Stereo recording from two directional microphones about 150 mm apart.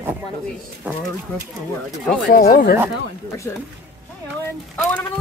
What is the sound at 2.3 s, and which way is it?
Speech, 80° left.